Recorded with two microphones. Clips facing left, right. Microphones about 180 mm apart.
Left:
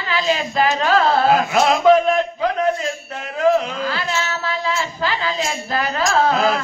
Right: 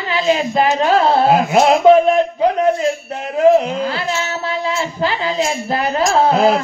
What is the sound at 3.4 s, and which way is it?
Speech, 30° right (ahead or behind).